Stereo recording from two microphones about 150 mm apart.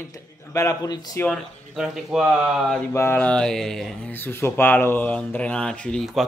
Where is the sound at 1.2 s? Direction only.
Centre (ahead or behind).